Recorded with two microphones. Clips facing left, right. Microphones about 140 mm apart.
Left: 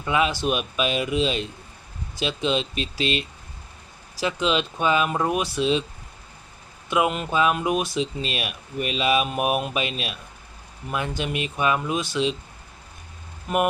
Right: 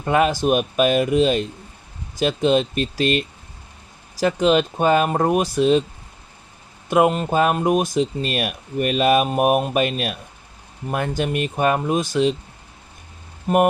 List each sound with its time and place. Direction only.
0.0 s speech: 45° right (ahead or behind)
6.9 s speech: 45° right (ahead or behind)
13.5 s speech: 40° right (ahead or behind)